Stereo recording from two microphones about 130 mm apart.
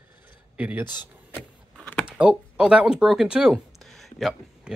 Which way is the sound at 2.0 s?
10° right (ahead or behind).